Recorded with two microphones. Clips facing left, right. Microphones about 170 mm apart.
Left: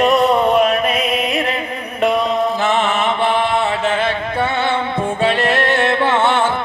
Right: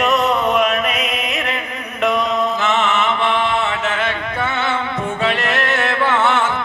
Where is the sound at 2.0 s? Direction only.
30° left (ahead or behind).